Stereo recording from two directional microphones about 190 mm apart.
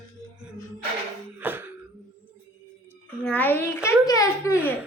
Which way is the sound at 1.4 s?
10° right (ahead or behind).